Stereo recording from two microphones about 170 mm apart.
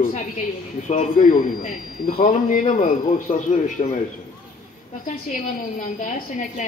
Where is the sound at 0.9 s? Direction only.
50° left (ahead or behind).